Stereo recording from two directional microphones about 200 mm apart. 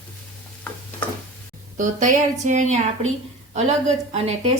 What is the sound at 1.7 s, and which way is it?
Speech, 40° right (ahead or behind).